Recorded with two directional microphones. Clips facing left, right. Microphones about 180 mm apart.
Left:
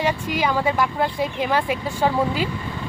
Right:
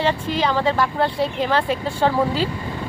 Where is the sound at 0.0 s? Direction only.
10° left (ahead or behind).